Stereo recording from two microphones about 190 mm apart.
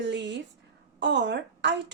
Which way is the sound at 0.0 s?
65° right (ahead or behind).